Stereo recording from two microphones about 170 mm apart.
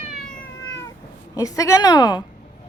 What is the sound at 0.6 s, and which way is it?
Cat, 15° left (ahead or behind).